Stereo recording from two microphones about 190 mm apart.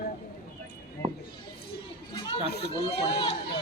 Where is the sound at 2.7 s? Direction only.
60° left (ahead or behind).